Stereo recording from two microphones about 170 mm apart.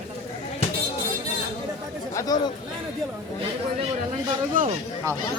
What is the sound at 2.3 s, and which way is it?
Speech, 20° left (ahead or behind).